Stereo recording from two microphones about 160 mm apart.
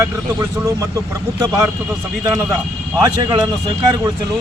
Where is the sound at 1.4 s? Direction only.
20° right (ahead or behind).